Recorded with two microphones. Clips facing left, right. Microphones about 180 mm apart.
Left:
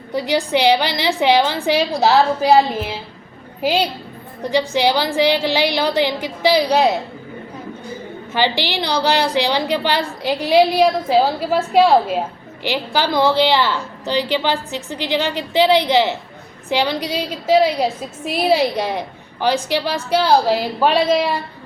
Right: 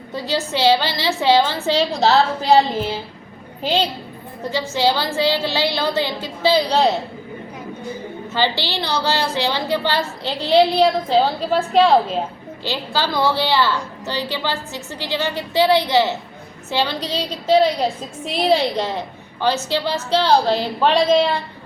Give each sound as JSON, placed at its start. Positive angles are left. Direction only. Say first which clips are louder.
{"t": 0.1, "sound": "a woman's voice", "louder": "left 5 dB", "side_deg": 15}
{"t": 3.6, "sound": "a woman's voice", "louder": "left 2 dB", "side_deg": 10}
{"t": 8.3, "sound": "a woman's voice", "louder": "left 2 dB", "side_deg": 15}